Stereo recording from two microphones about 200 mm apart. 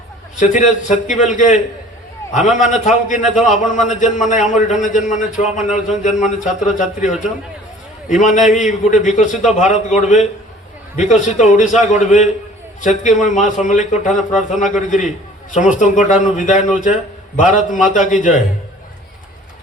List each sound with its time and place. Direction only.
0.3 s a man's voice: 40° left (ahead or behind)